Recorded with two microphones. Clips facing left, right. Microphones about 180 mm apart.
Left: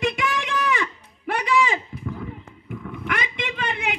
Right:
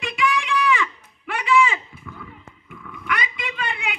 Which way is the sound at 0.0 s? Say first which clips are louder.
Even; 45° left (ahead or behind).